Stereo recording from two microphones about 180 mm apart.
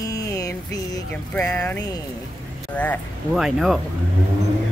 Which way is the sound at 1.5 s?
10° left (ahead or behind).